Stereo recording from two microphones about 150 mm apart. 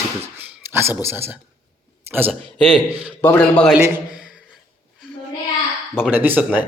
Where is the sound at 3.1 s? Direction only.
15° left (ahead or behind).